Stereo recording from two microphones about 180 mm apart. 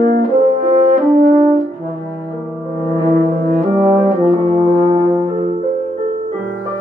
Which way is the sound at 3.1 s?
50° right (ahead or behind).